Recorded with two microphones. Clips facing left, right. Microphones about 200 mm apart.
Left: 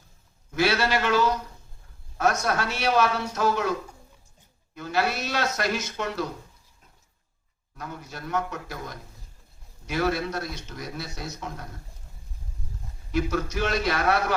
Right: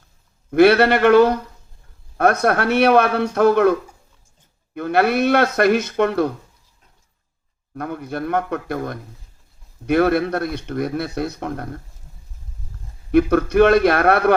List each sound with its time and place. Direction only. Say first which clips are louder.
0.5 s speech: right 11 dB; 60° right (ahead or behind)
7.7 s speech: right 12 dB; 60° right (ahead or behind)
13.1 s speech: right 11 dB; 60° right (ahead or behind)